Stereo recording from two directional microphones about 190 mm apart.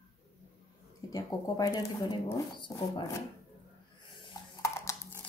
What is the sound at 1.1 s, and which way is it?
Speech, 20° left (ahead or behind).